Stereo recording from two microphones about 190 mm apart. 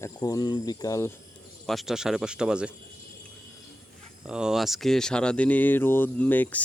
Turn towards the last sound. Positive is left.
turn(degrees=10)  # may be behind; listen again after turning